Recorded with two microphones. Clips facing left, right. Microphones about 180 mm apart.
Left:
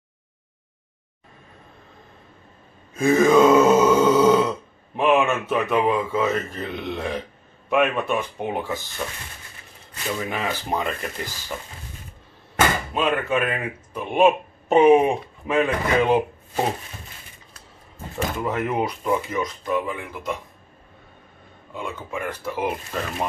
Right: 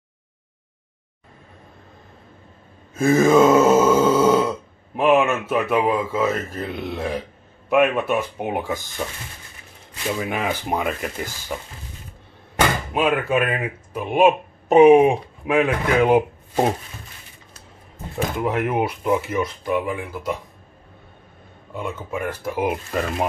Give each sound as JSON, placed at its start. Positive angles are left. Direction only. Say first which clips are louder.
{"t": 3.0, "sound": "grunt", "louder": "right 1 dB", "side_deg": 0}
{"t": 4.9, "sound": "speech", "louder": "right 2 dB", "side_deg": -5}
{"t": 10.2, "sound": "speech", "louder": "right 3 dB", "side_deg": -10}
{"t": 12.5, "sound": "speech", "louder": "right 1 dB", "side_deg": -10}
{"t": 18.1, "sound": "speech", "louder": "right 3 dB", "side_deg": -10}
{"t": 21.7, "sound": "speech", "louder": "right 3 dB", "side_deg": -5}